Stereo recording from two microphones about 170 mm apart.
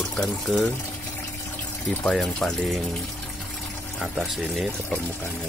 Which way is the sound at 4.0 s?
Centre (ahead or behind).